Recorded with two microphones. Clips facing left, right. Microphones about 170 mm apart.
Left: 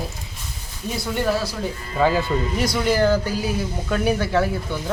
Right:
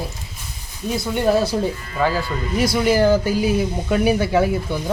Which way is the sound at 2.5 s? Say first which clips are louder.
Right 6 dB; 10° right (ahead or behind).